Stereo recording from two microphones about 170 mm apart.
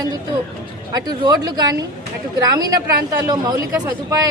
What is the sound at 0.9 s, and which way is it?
Speech, 25° right (ahead or behind).